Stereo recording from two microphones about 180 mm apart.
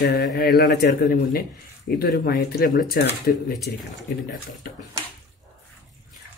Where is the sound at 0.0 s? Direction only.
60° left (ahead or behind).